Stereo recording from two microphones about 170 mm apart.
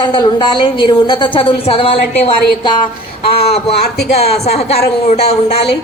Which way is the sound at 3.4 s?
70° left (ahead or behind).